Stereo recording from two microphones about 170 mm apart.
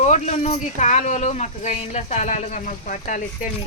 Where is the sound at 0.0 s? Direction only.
40° left (ahead or behind).